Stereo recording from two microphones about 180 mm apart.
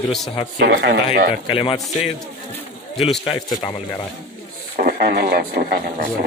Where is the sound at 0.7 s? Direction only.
80° right.